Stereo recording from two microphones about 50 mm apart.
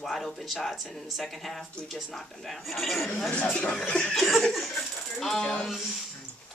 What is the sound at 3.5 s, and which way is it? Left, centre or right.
Speech, centre.